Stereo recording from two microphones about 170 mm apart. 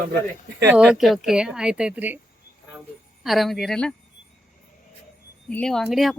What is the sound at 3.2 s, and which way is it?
Speech, centre (ahead or behind).